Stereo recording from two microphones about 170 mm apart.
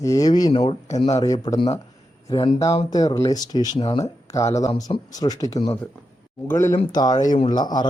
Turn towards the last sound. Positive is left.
turn(degrees=25)  # may be behind; listen again after turning